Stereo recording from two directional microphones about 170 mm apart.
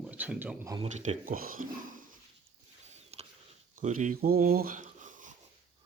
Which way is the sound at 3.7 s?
50° right (ahead or behind).